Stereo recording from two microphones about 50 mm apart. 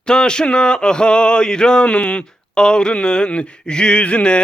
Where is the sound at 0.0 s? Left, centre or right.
Centre.